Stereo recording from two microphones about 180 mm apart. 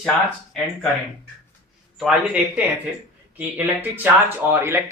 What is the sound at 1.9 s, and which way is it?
Speech, 5° right (ahead or behind).